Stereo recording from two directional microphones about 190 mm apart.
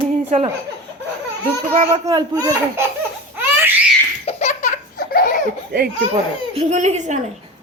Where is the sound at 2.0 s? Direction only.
20° right (ahead or behind).